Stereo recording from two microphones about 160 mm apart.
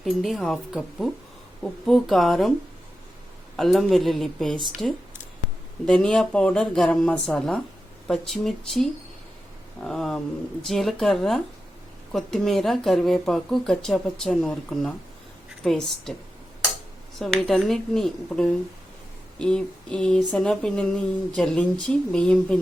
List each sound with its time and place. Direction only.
0.0 s speech: centre (ahead or behind)
3.6 s speech: centre (ahead or behind)
17.2 s speech: 5° left (ahead or behind)